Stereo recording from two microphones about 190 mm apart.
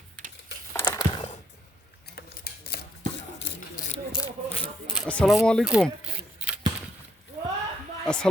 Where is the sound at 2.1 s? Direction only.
55° left (ahead or behind).